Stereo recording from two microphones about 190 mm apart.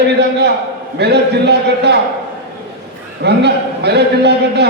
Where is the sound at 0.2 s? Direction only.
60° right (ahead or behind).